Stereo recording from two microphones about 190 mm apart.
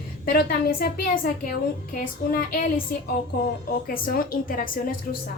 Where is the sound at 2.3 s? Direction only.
45° left (ahead or behind).